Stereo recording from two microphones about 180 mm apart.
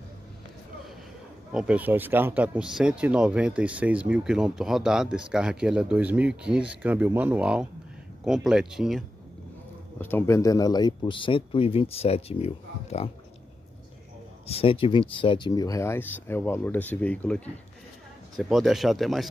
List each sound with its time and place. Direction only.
1.5 s speech: 5° right (ahead or behind)
9.9 s speech: 10° left (ahead or behind); by 13.1 s 35° left (ahead or behind)
14.4 s speech: 35° left (ahead or behind); by 19.2 s centre (ahead or behind)